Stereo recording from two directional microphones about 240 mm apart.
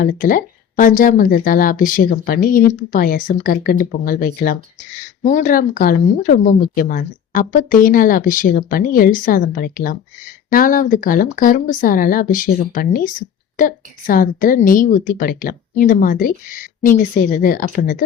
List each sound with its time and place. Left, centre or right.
0.0 s speech: left